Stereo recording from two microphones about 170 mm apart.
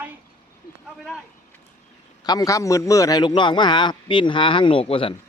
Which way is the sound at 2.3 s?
20° left (ahead or behind).